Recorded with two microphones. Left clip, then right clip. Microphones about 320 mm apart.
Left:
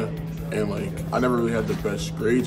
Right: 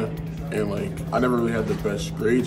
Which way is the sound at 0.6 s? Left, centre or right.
Centre.